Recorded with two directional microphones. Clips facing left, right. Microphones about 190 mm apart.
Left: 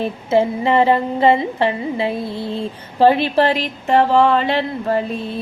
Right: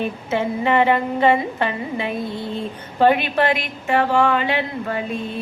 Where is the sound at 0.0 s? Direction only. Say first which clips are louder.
Left 5 dB; 35° left (ahead or behind).